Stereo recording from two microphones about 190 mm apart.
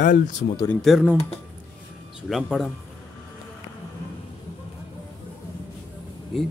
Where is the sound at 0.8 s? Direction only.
Centre (ahead or behind).